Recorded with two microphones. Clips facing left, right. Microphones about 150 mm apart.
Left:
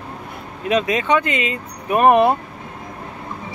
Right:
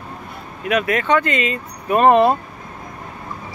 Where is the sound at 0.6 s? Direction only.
20° left (ahead or behind).